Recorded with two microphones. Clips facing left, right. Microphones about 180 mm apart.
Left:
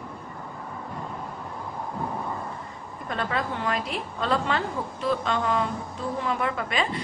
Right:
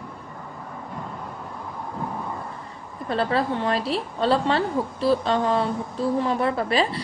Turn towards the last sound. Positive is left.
turn(degrees=-35)  # may be behind; listen again after turning